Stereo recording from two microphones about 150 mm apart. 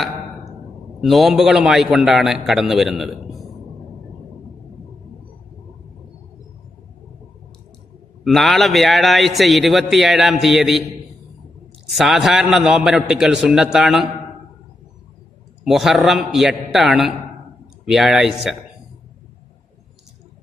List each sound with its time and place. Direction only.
1.0 s a man's voice: centre (ahead or behind)
8.2 s a man's voice: centre (ahead or behind)
11.9 s a man's voice: centre (ahead or behind)
15.6 s a man's voice: centre (ahead or behind)